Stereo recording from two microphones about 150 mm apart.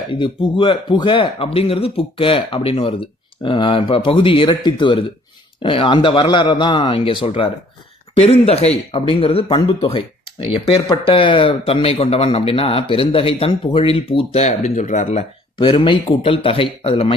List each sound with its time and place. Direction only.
0.1 s speech: 35° left (ahead or behind); by 15.2 s 55° left (ahead or behind)
15.5 s speech: 35° left (ahead or behind)